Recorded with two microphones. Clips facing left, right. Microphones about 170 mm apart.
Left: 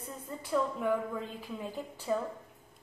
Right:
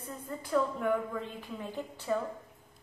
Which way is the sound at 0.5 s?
5° left (ahead or behind).